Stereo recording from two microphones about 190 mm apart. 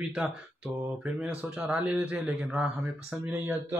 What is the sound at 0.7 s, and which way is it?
A man's voice, 5° right (ahead or behind).